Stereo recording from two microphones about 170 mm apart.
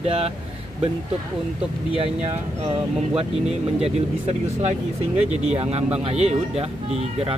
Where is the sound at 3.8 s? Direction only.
40° right (ahead or behind).